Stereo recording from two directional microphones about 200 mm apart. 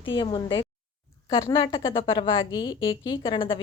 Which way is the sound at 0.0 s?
25° left (ahead or behind).